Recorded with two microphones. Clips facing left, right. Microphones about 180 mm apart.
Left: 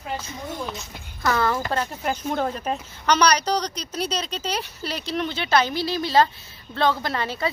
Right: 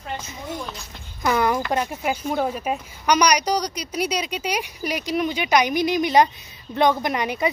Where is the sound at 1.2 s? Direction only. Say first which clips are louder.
Right 2 dB; 15° right (ahead or behind).